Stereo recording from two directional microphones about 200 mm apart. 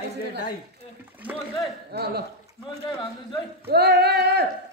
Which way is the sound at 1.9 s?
55° right (ahead or behind).